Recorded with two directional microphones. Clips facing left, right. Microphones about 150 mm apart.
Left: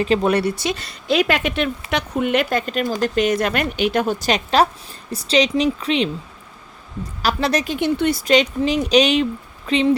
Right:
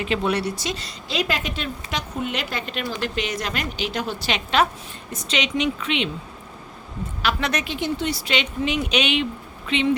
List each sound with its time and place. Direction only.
0.0 s speech: 40° left (ahead or behind)
7.2 s speech: 35° left (ahead or behind)
7.8 s speech: 60° left (ahead or behind); by 9.9 s 35° left (ahead or behind)